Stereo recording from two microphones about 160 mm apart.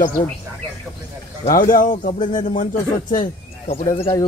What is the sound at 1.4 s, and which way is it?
Speech, 60° left (ahead or behind).